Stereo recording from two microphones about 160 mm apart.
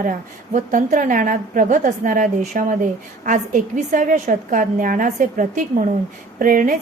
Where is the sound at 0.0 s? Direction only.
55° right (ahead or behind).